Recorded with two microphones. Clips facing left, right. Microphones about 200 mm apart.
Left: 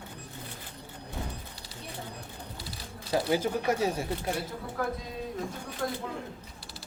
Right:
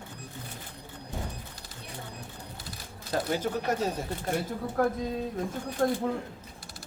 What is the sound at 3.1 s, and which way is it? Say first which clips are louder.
Speech: left 2 dB; 10° left (ahead or behind).